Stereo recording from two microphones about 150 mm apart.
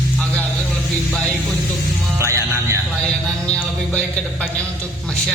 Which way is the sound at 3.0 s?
5° left (ahead or behind).